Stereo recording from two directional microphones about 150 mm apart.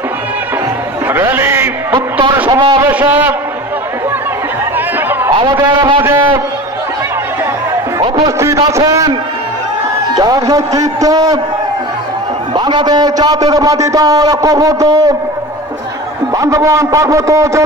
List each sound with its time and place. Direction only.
1.1 s a sound: 15° right (ahead or behind)
2.0 s a sound: 30° right (ahead or behind)
2.4 s speech: 35° right (ahead or behind)
2.8 s a man's voice: 10° right (ahead or behind)
5.3 s speech: 30° right (ahead or behind)
6.0 s a man's voice: 15° right (ahead or behind)
8.4 s a man's voice: 20° right (ahead or behind)
10.1 s a man's voice: 25° right (ahead or behind)
12.5 s a man's voice: 30° right (ahead or behind)
16.3 s a man's voice: 20° right (ahead or behind)